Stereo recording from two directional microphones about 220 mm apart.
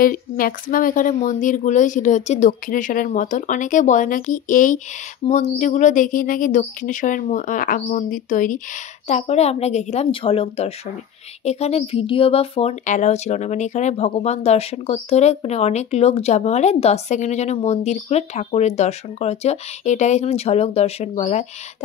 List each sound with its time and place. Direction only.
0.0 s a woman's voice: 40° left (ahead or behind)